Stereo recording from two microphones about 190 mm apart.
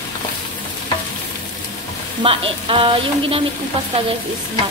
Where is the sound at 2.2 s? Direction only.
30° right (ahead or behind).